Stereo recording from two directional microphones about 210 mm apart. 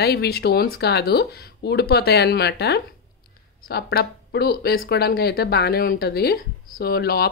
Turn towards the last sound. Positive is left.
turn(degrees=50)  # may be behind; listen again after turning